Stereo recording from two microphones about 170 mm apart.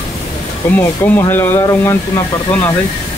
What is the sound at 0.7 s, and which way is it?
Speech, 10° left (ahead or behind).